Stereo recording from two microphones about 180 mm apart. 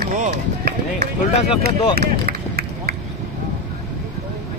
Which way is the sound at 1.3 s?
35° left (ahead or behind).